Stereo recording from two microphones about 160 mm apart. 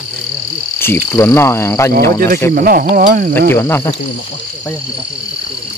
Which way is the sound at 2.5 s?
65° right (ahead or behind).